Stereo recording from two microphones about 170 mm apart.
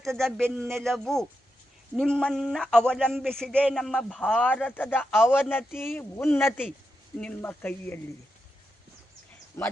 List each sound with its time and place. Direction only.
0.0 s a man's voice: centre (ahead or behind)
9.6 s speech: 15° left (ahead or behind)